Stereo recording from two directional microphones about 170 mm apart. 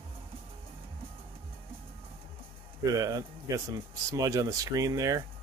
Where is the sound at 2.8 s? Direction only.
20° right (ahead or behind).